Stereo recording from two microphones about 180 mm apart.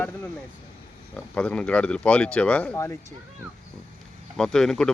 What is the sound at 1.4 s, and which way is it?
Speech, 5° left (ahead or behind).